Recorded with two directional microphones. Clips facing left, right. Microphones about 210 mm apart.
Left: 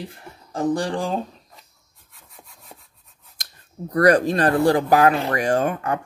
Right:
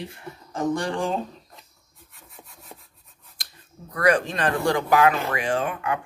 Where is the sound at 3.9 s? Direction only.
40° left (ahead or behind).